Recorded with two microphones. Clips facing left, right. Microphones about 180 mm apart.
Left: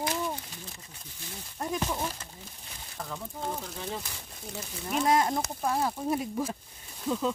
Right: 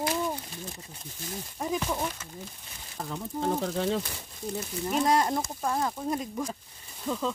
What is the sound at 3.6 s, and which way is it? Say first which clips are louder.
Speech: right 9 dB; 75° right (ahead or behind).